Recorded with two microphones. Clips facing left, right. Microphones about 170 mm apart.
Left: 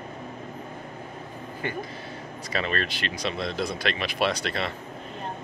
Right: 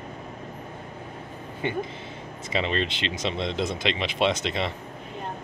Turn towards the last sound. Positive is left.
turn(degrees=-20)  # may be behind; listen again after turning